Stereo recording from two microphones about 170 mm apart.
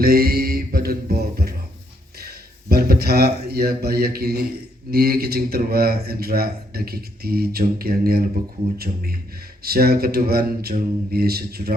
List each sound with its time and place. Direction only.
0.0 s mantra: 60° right (ahead or behind)
2.1 s a man's voice: 65° right (ahead or behind)
9.6 s a man's voice: 65° right (ahead or behind)